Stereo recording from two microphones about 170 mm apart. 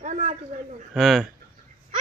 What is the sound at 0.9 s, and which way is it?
Speech, centre (ahead or behind).